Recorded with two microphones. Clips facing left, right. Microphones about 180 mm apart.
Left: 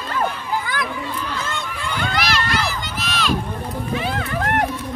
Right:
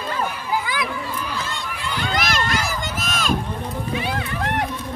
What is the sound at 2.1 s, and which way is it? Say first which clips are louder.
Run: even; 45° right (ahead or behind).